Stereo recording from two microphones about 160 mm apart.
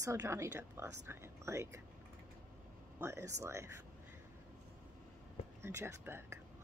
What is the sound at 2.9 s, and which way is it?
Speech, 15° right (ahead or behind).